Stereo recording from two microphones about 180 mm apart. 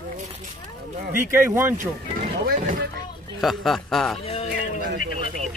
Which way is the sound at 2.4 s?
45° right (ahead or behind).